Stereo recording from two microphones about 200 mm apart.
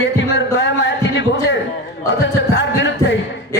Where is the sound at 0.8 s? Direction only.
60° left (ahead or behind).